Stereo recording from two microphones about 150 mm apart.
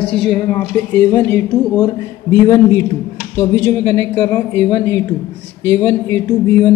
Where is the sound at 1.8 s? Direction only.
20° left (ahead or behind).